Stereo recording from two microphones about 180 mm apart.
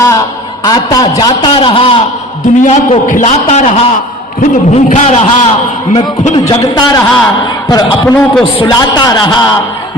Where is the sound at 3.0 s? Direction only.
40° left (ahead or behind).